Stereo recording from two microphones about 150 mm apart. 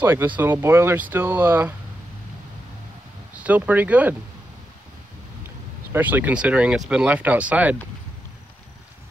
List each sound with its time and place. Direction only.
0.0 s speech: 15° right (ahead or behind)
3.3 s speech: 10° right (ahead or behind)
5.9 s speech: 10° right (ahead or behind)